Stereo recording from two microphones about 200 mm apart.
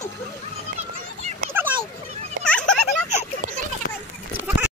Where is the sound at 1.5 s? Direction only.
10° right (ahead or behind).